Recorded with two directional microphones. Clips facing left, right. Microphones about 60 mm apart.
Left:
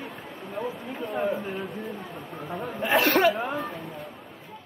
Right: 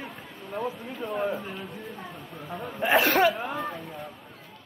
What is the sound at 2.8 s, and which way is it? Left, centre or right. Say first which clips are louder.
Speech: even; centre.